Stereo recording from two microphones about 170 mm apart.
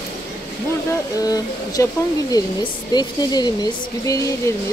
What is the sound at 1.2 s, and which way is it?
A woman's voice, 20° left (ahead or behind).